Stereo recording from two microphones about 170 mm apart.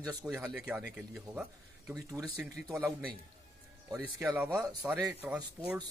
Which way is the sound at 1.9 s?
20° right (ahead or behind).